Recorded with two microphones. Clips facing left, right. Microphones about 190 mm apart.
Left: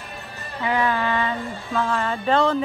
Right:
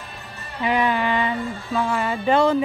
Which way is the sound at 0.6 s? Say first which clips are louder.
Right 1 dB; 15° right (ahead or behind).